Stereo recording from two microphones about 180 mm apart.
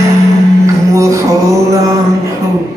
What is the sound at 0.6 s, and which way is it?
Music, 15° right (ahead or behind).